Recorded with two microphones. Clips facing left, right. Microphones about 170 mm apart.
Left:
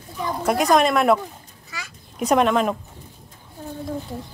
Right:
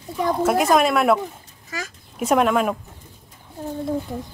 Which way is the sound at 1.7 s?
45° right (ahead or behind).